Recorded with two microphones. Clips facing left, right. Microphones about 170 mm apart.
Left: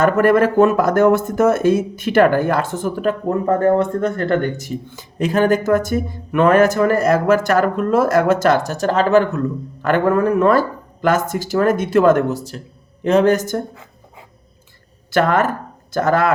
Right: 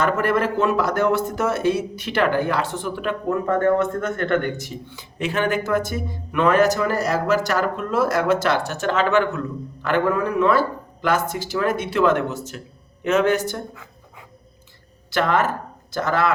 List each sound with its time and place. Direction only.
0.0 s speech: 50° left (ahead or behind)
15.1 s speech: 50° left (ahead or behind)